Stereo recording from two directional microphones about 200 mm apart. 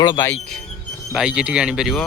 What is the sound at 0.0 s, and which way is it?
Speech, 15° left (ahead or behind).